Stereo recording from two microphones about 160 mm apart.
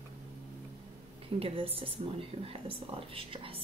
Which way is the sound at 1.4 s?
35° right (ahead or behind).